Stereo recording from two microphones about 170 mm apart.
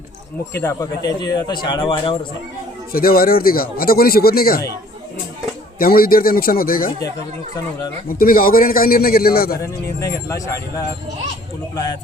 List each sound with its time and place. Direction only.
0.5 s speech: 20° left (ahead or behind)
2.9 s speech: 60° left (ahead or behind)
5.8 s speech: 60° left (ahead or behind)
10.0 s speech: 20° left (ahead or behind)